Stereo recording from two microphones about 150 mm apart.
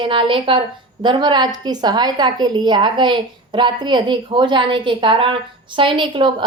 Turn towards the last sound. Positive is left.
turn(degrees=-35)  # may be behind; listen again after turning